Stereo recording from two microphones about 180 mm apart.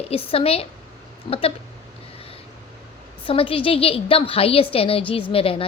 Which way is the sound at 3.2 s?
30° left (ahead or behind).